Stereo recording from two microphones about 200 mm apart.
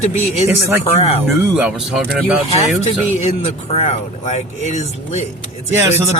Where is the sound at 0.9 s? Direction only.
30° left (ahead or behind).